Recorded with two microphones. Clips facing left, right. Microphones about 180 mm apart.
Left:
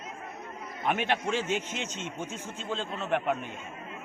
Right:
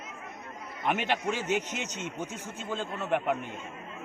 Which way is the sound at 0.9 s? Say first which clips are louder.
Left 1 dB; 10° right (ahead or behind).